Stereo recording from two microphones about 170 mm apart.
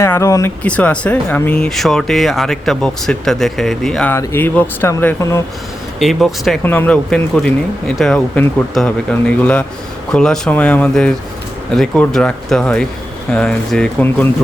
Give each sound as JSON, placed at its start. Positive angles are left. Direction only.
{"t": 0.0, "sound": "speech", "side_deg": 15}
{"t": 4.1, "sound": "speech", "side_deg": 15}
{"t": 6.0, "sound": "speech", "side_deg": 0}
{"t": 6.6, "sound": "speech", "side_deg": 10}